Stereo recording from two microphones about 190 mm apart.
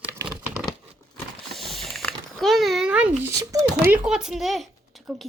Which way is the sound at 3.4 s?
15° right (ahead or behind).